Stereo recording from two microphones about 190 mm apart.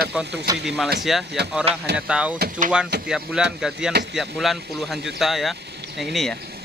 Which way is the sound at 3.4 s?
5° right (ahead or behind).